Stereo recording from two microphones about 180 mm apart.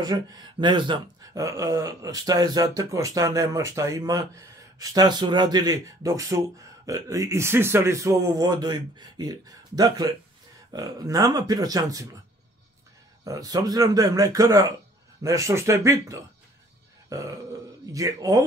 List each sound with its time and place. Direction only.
0.0 s speech: 20° right (ahead or behind)
13.2 s a man's voice: 20° right (ahead or behind)